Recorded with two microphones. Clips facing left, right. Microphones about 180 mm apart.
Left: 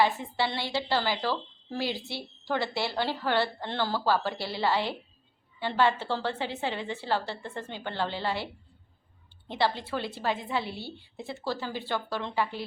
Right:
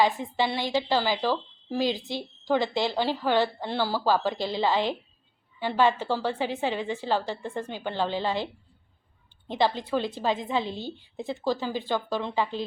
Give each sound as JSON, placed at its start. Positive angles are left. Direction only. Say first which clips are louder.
{"t": 0.0, "sound": "a woman's voice", "louder": "right 2 dB", "side_deg": -15}
{"t": 9.5, "sound": "a woman's voice", "louder": "right 3 dB", "side_deg": -15}